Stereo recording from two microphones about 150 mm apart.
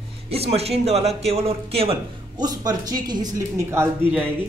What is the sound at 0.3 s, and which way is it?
Speech, 40° right (ahead or behind).